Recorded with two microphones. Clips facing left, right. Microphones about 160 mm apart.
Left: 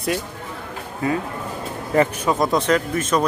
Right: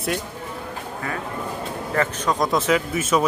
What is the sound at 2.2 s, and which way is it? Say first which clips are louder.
Speech: left 2 dB; 5° left (ahead or behind).